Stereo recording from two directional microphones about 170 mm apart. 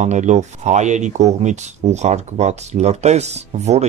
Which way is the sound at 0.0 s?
45° right (ahead or behind).